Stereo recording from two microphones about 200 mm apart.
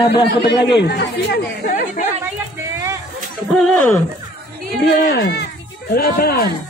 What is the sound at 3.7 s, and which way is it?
Speech, 10° left (ahead or behind).